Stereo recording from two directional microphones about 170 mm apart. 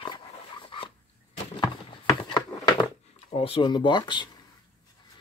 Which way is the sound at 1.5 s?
25° left (ahead or behind).